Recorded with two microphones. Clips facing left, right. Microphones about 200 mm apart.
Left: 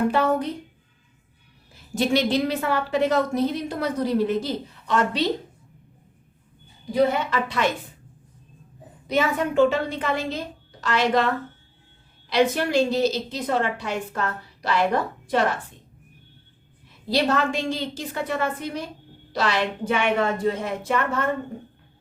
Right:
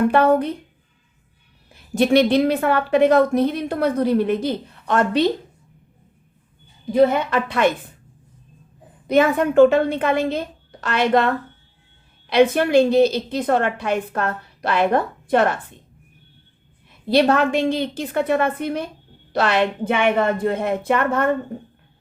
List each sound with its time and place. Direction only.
0.1 s a woman's voice: 55° right (ahead or behind)
1.7 s a woman's voice: 60° right (ahead or behind)
6.9 s a woman's voice: 55° right (ahead or behind)
9.0 s a woman's voice: 55° right (ahead or behind)
12.3 s a woman's voice: 55° right (ahead or behind)
17.1 s a woman's voice: 60° right (ahead or behind)